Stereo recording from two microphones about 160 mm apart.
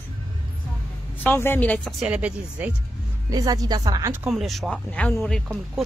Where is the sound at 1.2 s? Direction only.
15° left (ahead or behind).